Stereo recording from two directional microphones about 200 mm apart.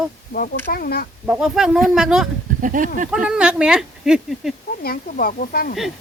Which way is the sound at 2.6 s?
40° right (ahead or behind).